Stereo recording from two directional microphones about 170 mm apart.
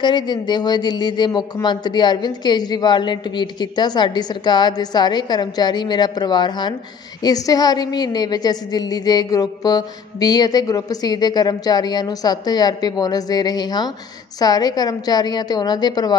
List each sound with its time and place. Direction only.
0.0 s speech: 25° left (ahead or behind)